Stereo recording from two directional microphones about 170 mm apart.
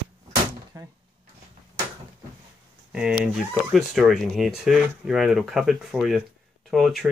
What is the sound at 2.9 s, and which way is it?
Speech, 5° right (ahead or behind).